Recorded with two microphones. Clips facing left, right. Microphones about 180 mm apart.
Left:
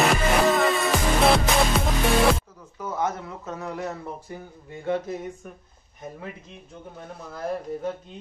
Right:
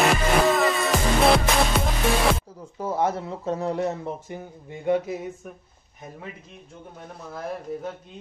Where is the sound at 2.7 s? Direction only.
30° right (ahead or behind).